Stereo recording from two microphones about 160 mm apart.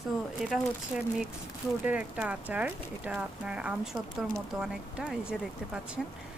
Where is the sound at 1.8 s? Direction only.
10° right (ahead or behind).